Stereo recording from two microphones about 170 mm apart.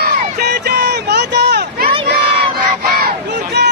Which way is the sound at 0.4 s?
70° right (ahead or behind).